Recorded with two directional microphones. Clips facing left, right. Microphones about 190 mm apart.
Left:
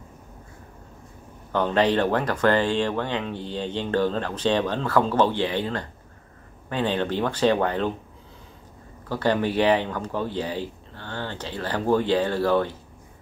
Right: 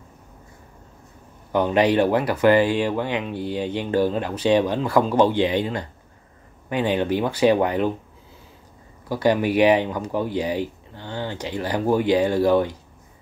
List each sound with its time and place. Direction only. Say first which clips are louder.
1.5 s speech: right 3 dB; 10° right (ahead or behind)
9.1 s speech: right 3 dB; 10° right (ahead or behind)